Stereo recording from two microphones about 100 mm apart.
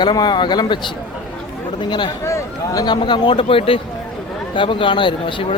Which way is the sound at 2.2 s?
30° left (ahead or behind).